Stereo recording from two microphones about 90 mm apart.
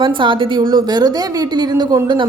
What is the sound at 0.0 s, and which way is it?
A woman's voice, 65° right (ahead or behind).